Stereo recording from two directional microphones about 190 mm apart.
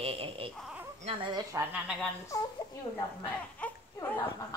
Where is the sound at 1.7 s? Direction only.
5° right (ahead or behind).